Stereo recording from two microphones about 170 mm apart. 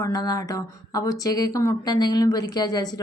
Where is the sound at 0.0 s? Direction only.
20° left (ahead or behind).